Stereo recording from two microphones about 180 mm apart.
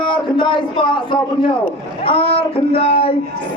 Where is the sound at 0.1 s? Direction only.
25° left (ahead or behind).